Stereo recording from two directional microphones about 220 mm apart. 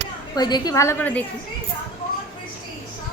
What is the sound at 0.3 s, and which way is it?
Speech, 20° left (ahead or behind).